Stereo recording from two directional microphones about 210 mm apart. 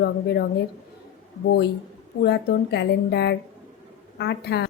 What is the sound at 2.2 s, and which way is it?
Speech, 50° left (ahead or behind).